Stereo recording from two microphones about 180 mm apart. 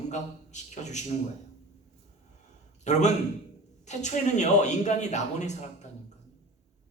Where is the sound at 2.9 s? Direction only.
40° left (ahead or behind).